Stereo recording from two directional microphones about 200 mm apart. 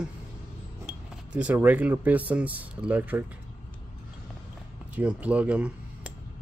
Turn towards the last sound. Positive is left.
turn(degrees=-5)  # may be behind; listen again after turning